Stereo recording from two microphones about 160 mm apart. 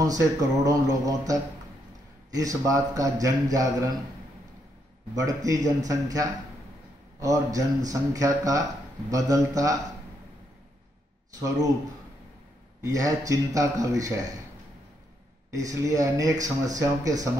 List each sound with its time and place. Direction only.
0.0 s speech: 25° right (ahead or behind)
5.1 s speech: 20° right (ahead or behind)
11.3 s speech: 25° right (ahead or behind)
12.8 s speech: 20° right (ahead or behind)
15.5 s speech: 20° right (ahead or behind)